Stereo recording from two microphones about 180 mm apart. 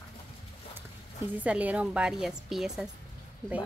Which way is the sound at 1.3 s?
10° right (ahead or behind).